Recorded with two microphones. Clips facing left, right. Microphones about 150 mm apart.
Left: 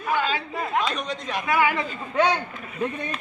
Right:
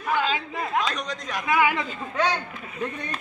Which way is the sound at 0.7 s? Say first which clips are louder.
Left 1 dB; 5° left (ahead or behind).